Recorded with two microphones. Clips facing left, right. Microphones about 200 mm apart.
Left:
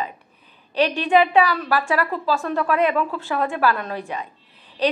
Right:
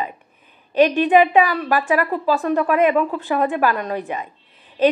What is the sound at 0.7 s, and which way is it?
A woman's voice, 15° right (ahead or behind).